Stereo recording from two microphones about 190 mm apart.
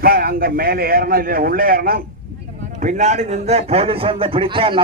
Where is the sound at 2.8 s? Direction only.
40° right (ahead or behind).